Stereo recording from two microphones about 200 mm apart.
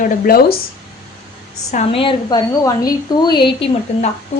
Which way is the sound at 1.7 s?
30° left (ahead or behind).